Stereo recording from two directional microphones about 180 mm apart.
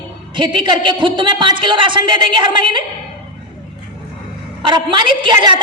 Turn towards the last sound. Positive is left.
turn(degrees=-25)  # may be behind; listen again after turning